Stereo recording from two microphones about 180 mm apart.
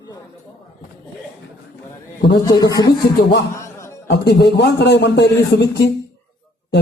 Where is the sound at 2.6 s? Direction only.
20° left (ahead or behind).